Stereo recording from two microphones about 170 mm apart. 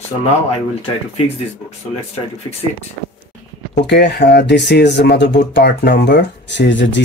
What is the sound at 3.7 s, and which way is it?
Speech, 85° left.